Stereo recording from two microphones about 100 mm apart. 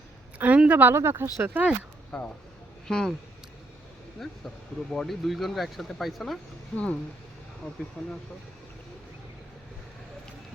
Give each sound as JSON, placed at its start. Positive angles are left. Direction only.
{"t": 0.3, "sound": "speech", "side_deg": -15}
{"t": 2.1, "sound": "speech", "side_deg": 10}
{"t": 4.2, "sound": "speech", "side_deg": 5}
{"t": 6.7, "sound": "speech", "side_deg": 10}